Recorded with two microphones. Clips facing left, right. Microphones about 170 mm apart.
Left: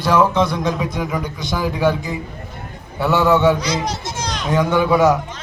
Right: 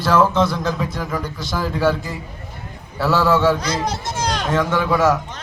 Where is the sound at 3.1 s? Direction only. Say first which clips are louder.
Left 2 dB; 20° left (ahead or behind).